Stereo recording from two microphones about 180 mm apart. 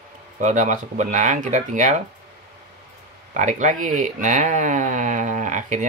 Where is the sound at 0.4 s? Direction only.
45° right (ahead or behind).